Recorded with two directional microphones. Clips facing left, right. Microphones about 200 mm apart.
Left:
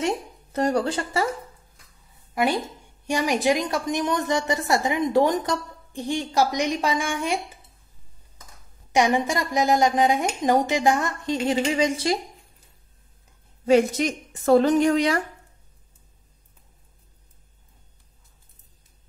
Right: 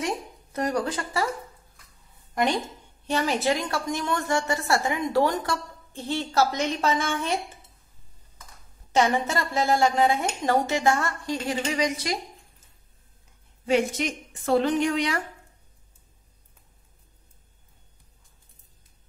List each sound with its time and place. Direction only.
0.0 s a sound: 30° left (ahead or behind)
2.3 s a woman's voice: 5° left (ahead or behind)
8.9 s a woman's voice: 15° left (ahead or behind); by 12.6 s 30° left (ahead or behind)
13.7 s a woman's voice: 40° left (ahead or behind)